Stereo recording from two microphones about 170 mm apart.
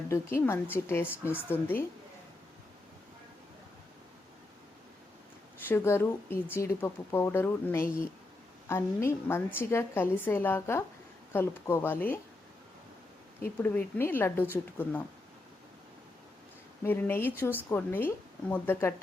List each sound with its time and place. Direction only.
0.1 s a woman's voice: 15° left (ahead or behind)
5.6 s a woman's voice: 15° left (ahead or behind)
13.4 s a woman's voice: 10° left (ahead or behind)
16.8 s a woman's voice: 10° left (ahead or behind)